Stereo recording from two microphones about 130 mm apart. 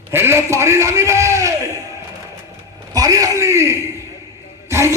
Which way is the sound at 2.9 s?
25° right (ahead or behind).